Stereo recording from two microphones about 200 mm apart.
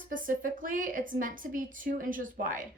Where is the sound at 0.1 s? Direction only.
45° right (ahead or behind).